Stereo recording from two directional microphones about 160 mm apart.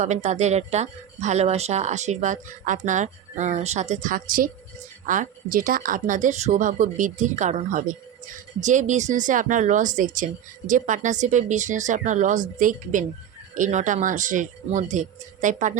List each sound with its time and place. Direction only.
0.0 s speech: 45° right (ahead or behind)